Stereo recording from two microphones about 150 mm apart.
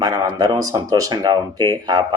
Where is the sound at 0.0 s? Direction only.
25° right (ahead or behind).